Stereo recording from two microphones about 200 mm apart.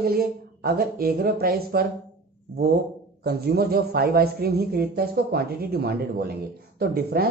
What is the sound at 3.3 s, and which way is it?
Speech, 50° right (ahead or behind).